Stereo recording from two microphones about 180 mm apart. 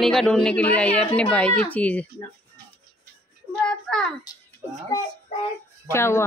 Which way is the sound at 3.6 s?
5° left (ahead or behind).